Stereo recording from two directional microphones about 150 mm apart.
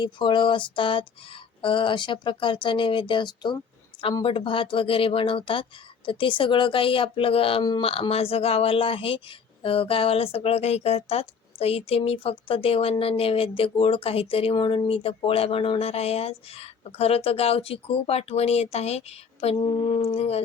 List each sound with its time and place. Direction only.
0.0 s speech: 30° left (ahead or behind)